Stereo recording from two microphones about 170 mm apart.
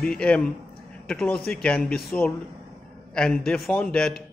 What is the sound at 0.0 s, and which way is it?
A man's voice, 5° left (ahead or behind).